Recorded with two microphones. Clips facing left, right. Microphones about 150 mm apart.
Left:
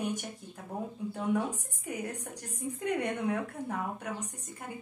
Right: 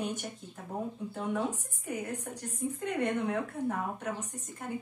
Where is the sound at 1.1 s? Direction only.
10° left (ahead or behind).